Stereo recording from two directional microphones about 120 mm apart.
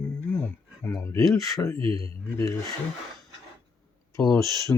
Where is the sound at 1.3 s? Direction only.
25° left (ahead or behind).